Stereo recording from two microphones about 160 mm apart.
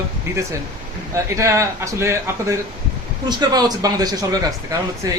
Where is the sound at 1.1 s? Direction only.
20° right (ahead or behind).